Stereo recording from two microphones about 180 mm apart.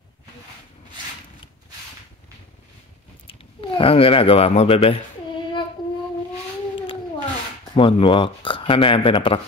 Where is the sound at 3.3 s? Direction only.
30° left (ahead or behind).